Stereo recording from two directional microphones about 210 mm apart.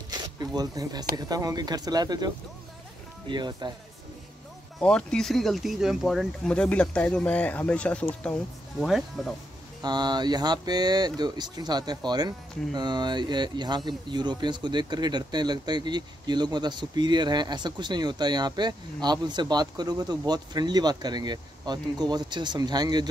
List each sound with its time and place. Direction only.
0.1 s a sound: 20° right (ahead or behind)
1.1 s speech: 20° right (ahead or behind)
4.7 s speech: 5° left (ahead or behind)
9.8 s speech: 20° right (ahead or behind)